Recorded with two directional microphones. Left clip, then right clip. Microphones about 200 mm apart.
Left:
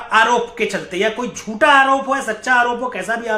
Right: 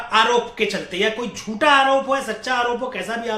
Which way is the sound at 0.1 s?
20° left (ahead or behind).